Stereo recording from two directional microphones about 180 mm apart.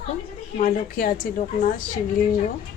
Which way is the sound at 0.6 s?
50° left (ahead or behind).